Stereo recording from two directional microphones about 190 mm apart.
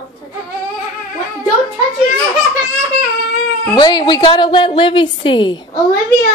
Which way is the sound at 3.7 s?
25° left (ahead or behind).